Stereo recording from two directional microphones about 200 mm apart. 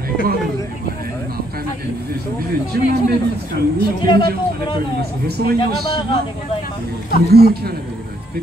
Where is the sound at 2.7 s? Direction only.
50° right (ahead or behind).